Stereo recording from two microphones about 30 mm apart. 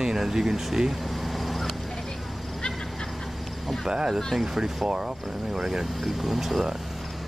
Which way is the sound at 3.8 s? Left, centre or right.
Right.